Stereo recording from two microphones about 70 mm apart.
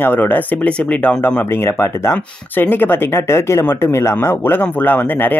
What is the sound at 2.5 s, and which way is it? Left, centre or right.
Speech, left.